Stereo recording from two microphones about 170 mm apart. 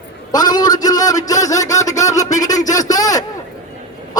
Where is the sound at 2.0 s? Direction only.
20° left (ahead or behind).